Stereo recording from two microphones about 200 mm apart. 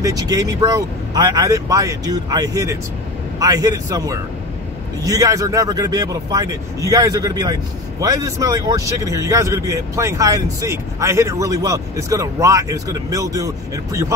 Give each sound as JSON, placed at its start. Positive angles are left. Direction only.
{"t": 0.0, "sound": "a man's voice", "side_deg": -20}